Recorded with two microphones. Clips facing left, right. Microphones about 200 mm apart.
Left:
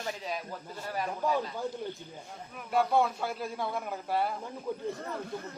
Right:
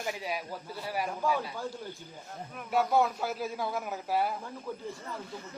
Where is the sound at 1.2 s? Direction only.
20° left (ahead or behind).